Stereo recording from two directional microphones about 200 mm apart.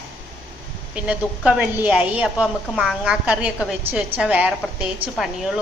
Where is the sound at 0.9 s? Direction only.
5° right (ahead or behind).